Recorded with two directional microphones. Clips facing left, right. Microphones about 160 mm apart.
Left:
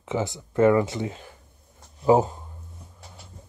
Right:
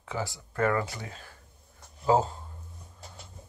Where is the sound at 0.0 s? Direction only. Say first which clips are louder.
Left 7 dB; 20° left (ahead or behind).